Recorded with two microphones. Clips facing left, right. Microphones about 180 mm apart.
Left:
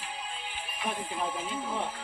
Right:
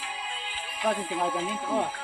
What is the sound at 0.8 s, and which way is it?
Music, 85° right.